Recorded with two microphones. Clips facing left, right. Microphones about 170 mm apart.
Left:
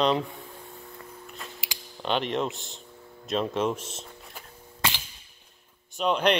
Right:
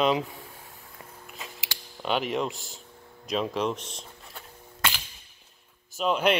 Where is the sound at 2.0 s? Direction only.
5° right (ahead or behind).